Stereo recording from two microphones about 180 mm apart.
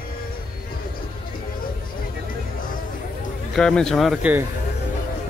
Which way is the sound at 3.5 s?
5° left (ahead or behind).